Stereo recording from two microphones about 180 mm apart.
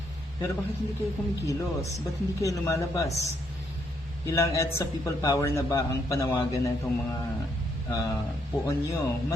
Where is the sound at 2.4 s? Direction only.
15° left (ahead or behind).